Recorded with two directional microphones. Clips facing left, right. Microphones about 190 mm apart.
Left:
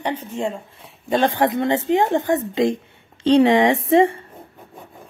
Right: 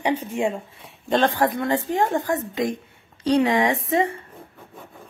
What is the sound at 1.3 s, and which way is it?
A woman's voice, 20° left (ahead or behind).